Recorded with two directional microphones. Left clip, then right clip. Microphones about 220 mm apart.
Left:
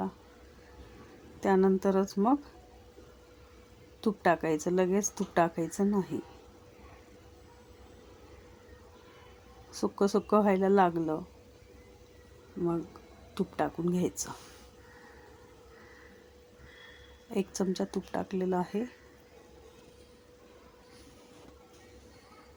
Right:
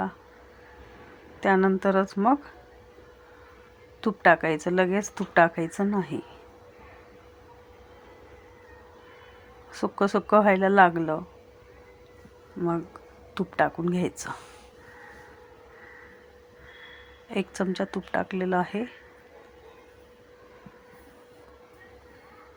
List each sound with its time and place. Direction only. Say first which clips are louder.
1.4 s speech: right 4 dB; 5° right (ahead or behind)
4.0 s speech: right 7 dB; 5° right (ahead or behind)
10.0 s speech: right 6 dB; 5° right (ahead or behind)
13.3 s speech: right 7 dB; 10° right (ahead or behind)
17.3 s speech: right 4 dB; 5° right (ahead or behind)